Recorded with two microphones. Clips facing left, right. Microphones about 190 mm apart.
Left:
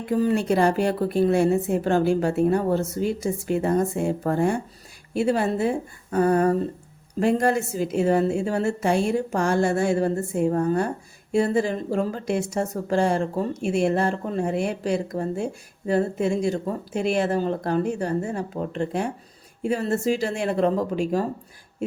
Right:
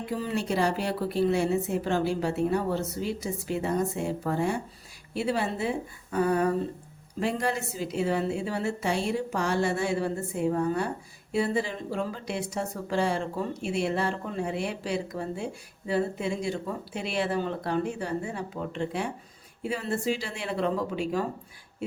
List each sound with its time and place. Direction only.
0.0 s a woman's voice: 50° left (ahead or behind)